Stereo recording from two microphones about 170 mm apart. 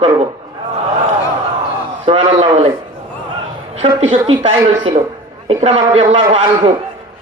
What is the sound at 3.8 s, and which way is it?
A man's voice, 35° right (ahead or behind).